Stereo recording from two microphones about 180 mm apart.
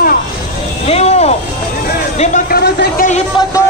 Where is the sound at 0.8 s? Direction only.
35° left (ahead or behind).